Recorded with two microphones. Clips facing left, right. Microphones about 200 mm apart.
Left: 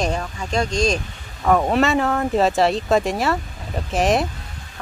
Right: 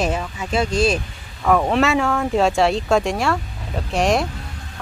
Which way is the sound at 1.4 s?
5° left (ahead or behind).